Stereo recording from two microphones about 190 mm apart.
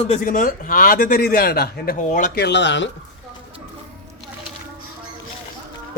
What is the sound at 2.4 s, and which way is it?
Speech, 65° left (ahead or behind).